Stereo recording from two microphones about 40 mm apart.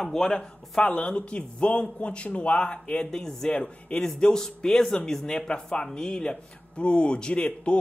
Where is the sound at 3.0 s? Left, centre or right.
Centre.